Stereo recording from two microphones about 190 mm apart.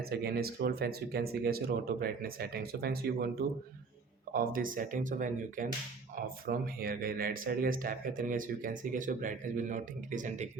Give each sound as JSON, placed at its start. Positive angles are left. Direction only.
{"t": 0.0, "sound": "speech", "side_deg": -55}
{"t": 4.3, "sound": "speech", "side_deg": -50}